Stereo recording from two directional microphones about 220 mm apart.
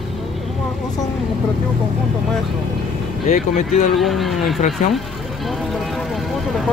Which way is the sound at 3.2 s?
35° left (ahead or behind).